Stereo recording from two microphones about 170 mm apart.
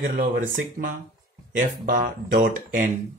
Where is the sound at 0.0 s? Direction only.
60° right (ahead or behind).